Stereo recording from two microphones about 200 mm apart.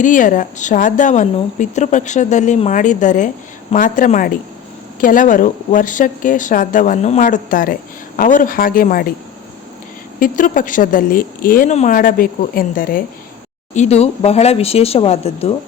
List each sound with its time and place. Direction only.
0.0 s a woman's voice: 40° left (ahead or behind)
10.2 s a woman's voice: 45° left (ahead or behind)
13.7 s a woman's voice: 30° left (ahead or behind)